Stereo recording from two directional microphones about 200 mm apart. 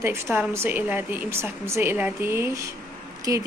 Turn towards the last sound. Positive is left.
turn(degrees=-15)  # may be behind; listen again after turning